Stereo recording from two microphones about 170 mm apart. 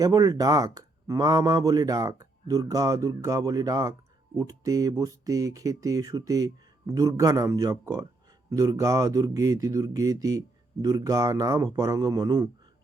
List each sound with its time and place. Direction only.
0.0 s speech: 20° right (ahead or behind)